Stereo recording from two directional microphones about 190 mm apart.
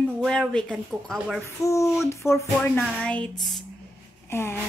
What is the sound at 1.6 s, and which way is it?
Speech, 15° left (ahead or behind).